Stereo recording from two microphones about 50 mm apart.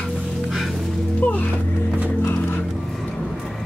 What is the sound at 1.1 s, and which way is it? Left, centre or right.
Music, left.